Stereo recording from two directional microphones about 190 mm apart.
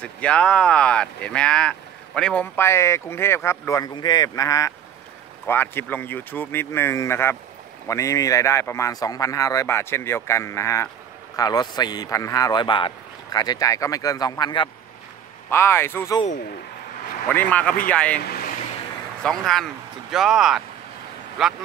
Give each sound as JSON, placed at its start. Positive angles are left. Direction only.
{"t": 0.0, "sound": "a man's voice", "side_deg": 5}
{"t": 15.5, "sound": "speech", "side_deg": 15}
{"t": 17.3, "sound": "speech", "side_deg": 10}
{"t": 18.2, "sound": "speech", "side_deg": 55}
{"t": 19.2, "sound": "speech", "side_deg": 0}